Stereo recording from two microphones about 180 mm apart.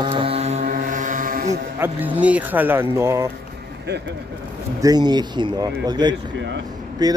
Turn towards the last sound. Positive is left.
turn(degrees=-20)  # may be behind; listen again after turning